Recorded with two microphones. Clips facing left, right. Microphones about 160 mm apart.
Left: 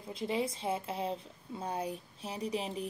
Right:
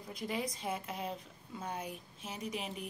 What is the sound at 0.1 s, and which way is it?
A woman's voice, 25° left (ahead or behind).